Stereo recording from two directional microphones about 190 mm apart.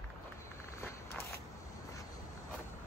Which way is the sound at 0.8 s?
15° left (ahead or behind).